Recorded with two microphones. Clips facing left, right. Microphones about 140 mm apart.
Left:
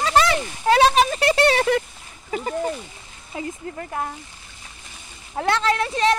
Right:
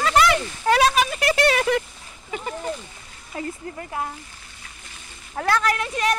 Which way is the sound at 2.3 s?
35° left (ahead or behind).